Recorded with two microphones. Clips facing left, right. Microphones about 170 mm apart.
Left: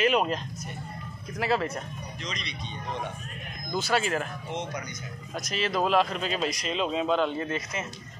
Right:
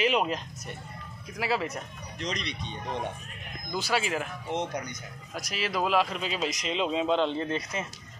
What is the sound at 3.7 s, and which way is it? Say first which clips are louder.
Speech: left 2 dB; 10° right (ahead or behind).